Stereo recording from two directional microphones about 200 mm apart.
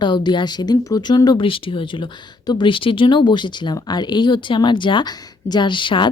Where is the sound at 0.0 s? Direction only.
20° left (ahead or behind).